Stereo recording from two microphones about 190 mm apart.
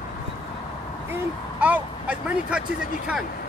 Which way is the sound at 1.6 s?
10° right (ahead or behind).